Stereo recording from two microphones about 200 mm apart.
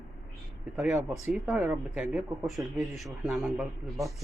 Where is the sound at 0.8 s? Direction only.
5° right (ahead or behind).